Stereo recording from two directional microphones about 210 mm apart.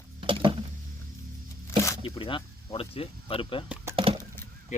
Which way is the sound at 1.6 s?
15° left (ahead or behind).